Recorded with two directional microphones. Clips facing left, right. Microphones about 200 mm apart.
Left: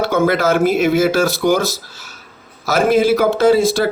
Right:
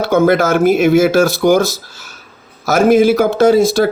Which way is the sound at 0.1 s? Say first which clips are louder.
Right 6 dB; 45° right (ahead or behind).